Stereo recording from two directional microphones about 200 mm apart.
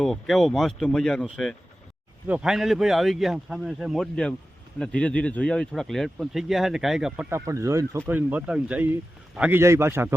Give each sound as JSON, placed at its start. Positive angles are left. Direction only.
{"t": 0.0, "sound": "speech", "side_deg": 0}